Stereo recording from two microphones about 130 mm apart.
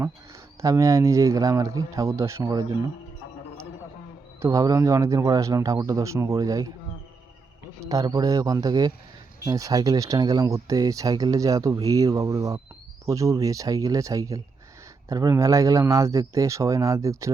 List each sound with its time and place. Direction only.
0.6 s speech: 25° right (ahead or behind)
4.4 s speech: 25° right (ahead or behind)
7.9 s speech: 30° right (ahead or behind)